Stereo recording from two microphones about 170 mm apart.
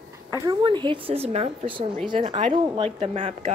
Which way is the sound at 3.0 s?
40° right (ahead or behind).